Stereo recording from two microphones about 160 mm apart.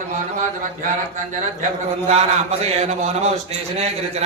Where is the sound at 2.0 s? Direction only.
40° right (ahead or behind).